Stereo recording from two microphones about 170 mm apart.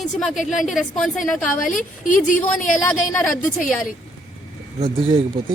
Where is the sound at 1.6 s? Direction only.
50° left (ahead or behind).